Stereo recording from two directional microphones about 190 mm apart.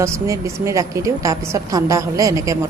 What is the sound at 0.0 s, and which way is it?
A woman's voice, 15° right (ahead or behind).